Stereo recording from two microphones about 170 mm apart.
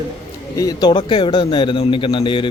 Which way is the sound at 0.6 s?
20° left (ahead or behind).